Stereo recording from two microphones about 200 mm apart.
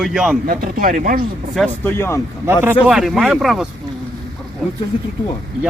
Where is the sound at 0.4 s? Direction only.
45° right (ahead or behind).